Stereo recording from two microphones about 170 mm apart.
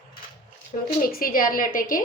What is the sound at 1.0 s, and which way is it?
A woman's voice, 60° left (ahead or behind).